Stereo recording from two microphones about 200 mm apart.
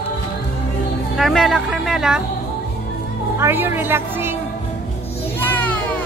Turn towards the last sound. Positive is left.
turn(degrees=5)  # may be behind; listen again after turning